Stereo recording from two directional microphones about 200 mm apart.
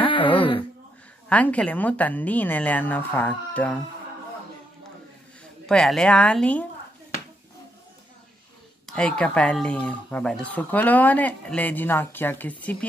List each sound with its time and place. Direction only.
0.0 s a sound: 25° left (ahead or behind)
1.3 s speech: 5° left (ahead or behind)
5.7 s a woman's voice: 5° left (ahead or behind)
8.8 s speech: 5° left (ahead or behind)